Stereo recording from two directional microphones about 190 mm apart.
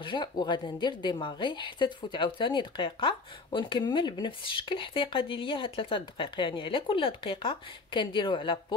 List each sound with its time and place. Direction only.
0.0 s a woman's voice: 25° left (ahead or behind)